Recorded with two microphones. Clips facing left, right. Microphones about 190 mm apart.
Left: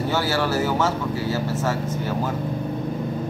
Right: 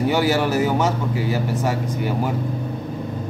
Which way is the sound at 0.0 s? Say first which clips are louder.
Right 4 dB; 15° right (ahead or behind).